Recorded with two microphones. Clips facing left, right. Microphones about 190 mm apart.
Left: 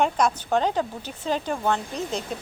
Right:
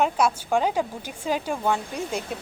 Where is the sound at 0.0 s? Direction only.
5° right (ahead or behind).